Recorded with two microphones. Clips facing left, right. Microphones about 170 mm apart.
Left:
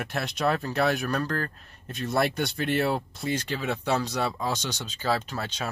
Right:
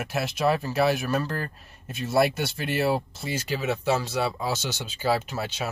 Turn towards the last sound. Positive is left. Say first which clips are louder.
# right 2 dB
turn(degrees=-10)  # may be behind; listen again after turning